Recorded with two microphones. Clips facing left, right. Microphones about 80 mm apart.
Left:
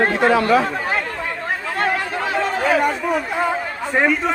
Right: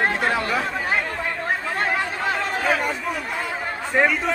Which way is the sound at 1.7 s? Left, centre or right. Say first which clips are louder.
Left 3 dB; right.